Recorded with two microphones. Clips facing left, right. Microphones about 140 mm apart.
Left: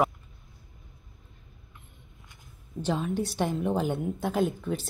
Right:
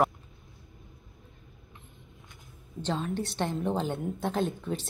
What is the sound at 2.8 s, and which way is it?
Speech, 5° left (ahead or behind).